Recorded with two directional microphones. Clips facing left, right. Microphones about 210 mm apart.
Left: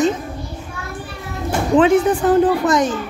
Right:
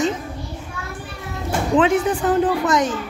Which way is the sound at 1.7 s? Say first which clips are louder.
Left 4 dB; 35° left (ahead or behind).